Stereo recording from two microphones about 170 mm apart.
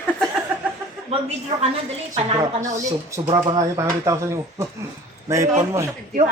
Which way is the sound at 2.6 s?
15° right (ahead or behind).